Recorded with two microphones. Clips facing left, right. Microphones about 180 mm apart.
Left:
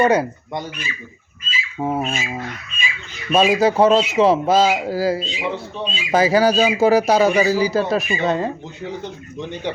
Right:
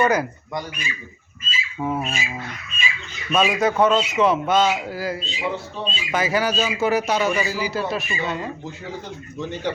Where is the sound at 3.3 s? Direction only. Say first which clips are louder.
Left 4 dB; 30° left (ahead or behind).